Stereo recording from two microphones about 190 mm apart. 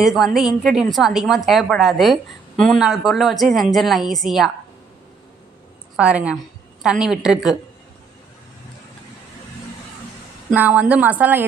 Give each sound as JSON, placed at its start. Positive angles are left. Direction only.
{"t": 0.0, "sound": "a woman's voice", "side_deg": 0}
{"t": 5.9, "sound": "a woman's voice", "side_deg": -5}
{"t": 10.5, "sound": "a woman's voice", "side_deg": -10}